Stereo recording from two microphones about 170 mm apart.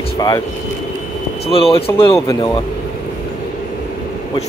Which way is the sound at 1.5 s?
35° left (ahead or behind).